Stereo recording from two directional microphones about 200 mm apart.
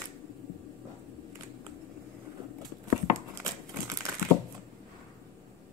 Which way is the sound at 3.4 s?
15° right (ahead or behind).